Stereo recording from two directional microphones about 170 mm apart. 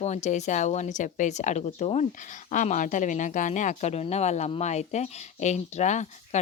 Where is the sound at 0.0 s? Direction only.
40° left (ahead or behind).